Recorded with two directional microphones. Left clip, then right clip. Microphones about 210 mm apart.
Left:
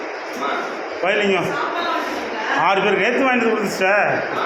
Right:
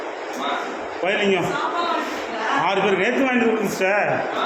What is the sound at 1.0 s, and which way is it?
Speech, 15° right (ahead or behind).